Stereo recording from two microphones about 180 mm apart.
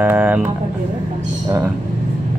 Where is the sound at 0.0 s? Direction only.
10° right (ahead or behind).